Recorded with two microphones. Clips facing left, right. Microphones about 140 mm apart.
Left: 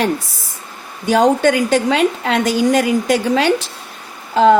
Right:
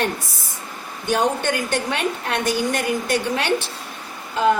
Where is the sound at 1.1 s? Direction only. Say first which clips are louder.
Left 8 dB; 90° left.